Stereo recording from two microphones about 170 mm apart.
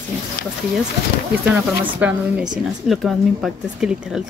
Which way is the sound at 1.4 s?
5° right (ahead or behind).